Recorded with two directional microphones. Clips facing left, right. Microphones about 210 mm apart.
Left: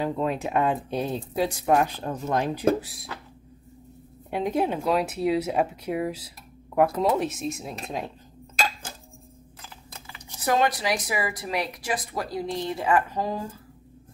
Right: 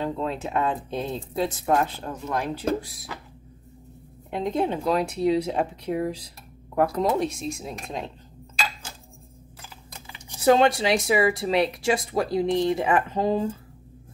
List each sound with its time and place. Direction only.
0.0 s speech: 15° left (ahead or behind)
2.8 s speech: centre (ahead or behind)
4.3 s speech: 10° left (ahead or behind)
9.9 s speech: 25° right (ahead or behind)